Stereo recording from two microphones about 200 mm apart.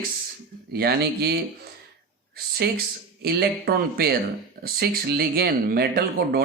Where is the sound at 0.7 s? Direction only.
50° right (ahead or behind).